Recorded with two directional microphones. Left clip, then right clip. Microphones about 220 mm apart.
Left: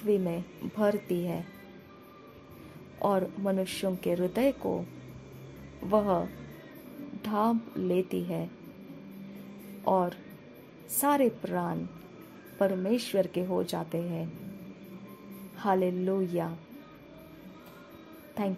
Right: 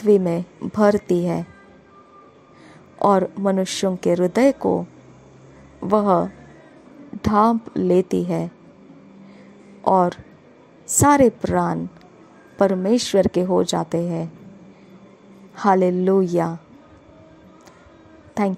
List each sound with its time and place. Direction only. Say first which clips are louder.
0.1 s speech: right 12 dB; 30° right (ahead or behind)
3.0 s a woman's voice: right 11 dB; 30° right (ahead or behind)
5.9 s a woman's voice: right 9 dB; 30° right (ahead or behind)
9.8 s a woman's voice: right 10 dB; 30° right (ahead or behind)
15.5 s speech: right 11 dB; 30° right (ahead or behind)
18.4 s a woman's voice: right 11 dB; 30° right (ahead or behind)